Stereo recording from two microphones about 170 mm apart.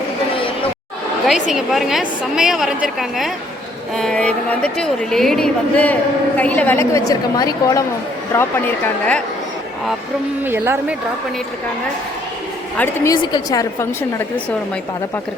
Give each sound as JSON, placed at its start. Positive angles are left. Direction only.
{"t": 1.5, "sound": "a woman's voice", "side_deg": 0}
{"t": 10.4, "sound": "a woman's voice", "side_deg": -15}
{"t": 12.7, "sound": "speech", "side_deg": 10}
{"t": 13.2, "sound": "a woman's voice", "side_deg": 25}